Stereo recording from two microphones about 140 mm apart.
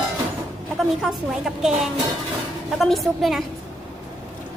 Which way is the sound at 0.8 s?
5° right (ahead or behind).